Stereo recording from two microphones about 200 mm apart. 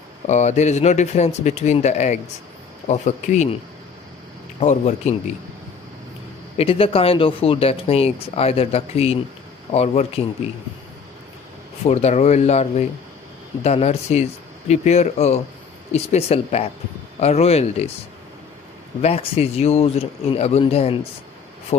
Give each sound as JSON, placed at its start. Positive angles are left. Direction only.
{"t": 0.3, "sound": "speech", "side_deg": 35}
{"t": 4.6, "sound": "speech", "side_deg": 35}
{"t": 6.5, "sound": "speech", "side_deg": 30}
{"t": 11.8, "sound": "speech", "side_deg": 35}
{"t": 18.9, "sound": "speech", "side_deg": 30}